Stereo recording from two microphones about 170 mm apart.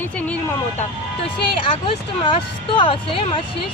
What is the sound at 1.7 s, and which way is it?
Speech, 30° left (ahead or behind).